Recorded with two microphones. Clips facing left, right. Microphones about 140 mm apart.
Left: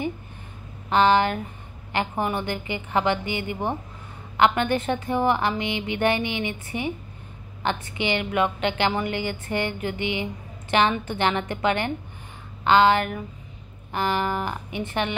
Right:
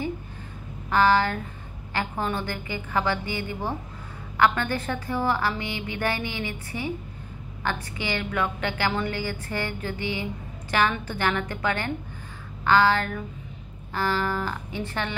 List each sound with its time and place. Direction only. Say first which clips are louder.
0.8 s a woman's voice: left 2 dB; 20° left (ahead or behind)